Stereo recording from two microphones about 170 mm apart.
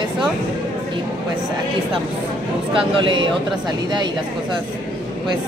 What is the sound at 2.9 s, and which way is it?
Speech, 25° right (ahead or behind).